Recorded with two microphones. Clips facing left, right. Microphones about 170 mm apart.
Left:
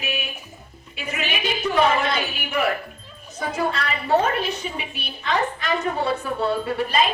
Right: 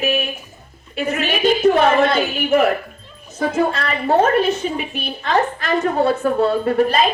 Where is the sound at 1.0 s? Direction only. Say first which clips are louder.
Right 9 dB; 45° right (ahead or behind).